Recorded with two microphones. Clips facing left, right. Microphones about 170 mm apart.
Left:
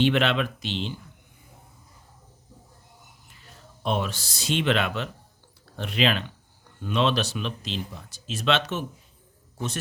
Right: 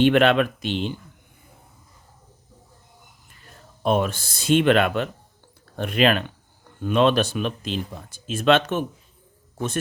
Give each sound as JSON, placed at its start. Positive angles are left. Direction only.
{"t": 0.0, "sound": "speech", "side_deg": -50}
{"t": 3.8, "sound": "speech", "side_deg": -50}